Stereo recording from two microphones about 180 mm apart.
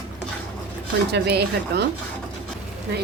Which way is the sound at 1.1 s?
65° right (ahead or behind).